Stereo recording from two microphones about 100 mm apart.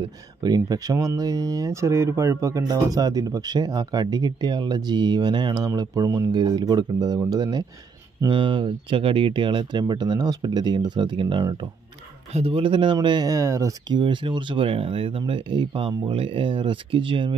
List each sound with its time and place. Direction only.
0.4 s speech: 40° right (ahead or behind)
8.3 s speech: 55° right (ahead or behind)
12.3 s speech: 85° right; by 13.3 s 45° right (ahead or behind)
13.3 s speech: 30° right (ahead or behind)
13.8 s speech: 50° right (ahead or behind)